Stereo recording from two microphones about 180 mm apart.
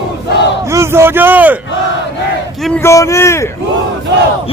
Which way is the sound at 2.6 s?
Centre (ahead or behind).